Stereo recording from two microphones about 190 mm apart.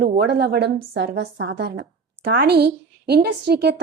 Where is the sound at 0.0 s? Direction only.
60° right (ahead or behind).